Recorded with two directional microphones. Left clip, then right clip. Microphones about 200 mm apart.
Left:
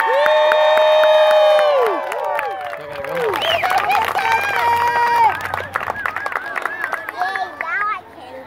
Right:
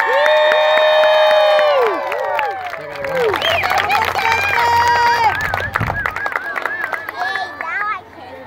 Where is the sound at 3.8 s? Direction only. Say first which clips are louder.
Right 1 dB; 45° left (ahead or behind).